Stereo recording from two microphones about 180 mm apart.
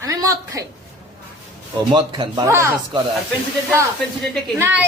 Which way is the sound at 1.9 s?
25° right (ahead or behind).